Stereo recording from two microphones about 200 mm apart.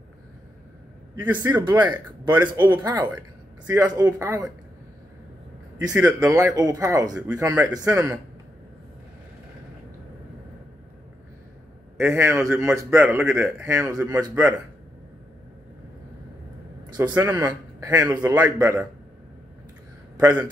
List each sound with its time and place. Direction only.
1.2 s a man's voice: 10° right (ahead or behind)
5.9 s a man's voice: 10° right (ahead or behind)
12.0 s a man's voice: 10° right (ahead or behind)
17.0 s a man's voice: 10° right (ahead or behind)